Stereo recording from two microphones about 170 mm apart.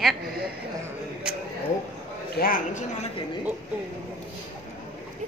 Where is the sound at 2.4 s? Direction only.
55° left (ahead or behind).